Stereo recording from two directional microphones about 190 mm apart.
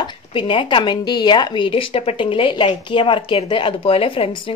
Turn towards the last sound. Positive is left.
turn(degrees=30)  # may be behind; listen again after turning